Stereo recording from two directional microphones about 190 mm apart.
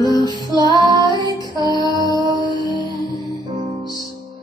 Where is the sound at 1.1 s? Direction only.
20° left (ahead or behind).